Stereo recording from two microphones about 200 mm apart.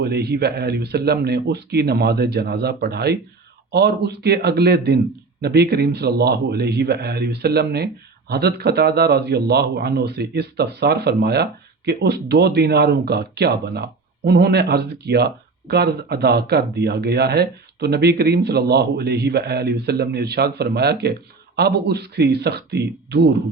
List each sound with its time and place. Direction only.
0.0 s speech: 55° right (ahead or behind)